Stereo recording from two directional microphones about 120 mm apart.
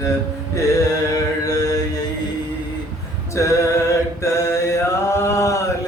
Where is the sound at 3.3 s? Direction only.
25° left (ahead or behind).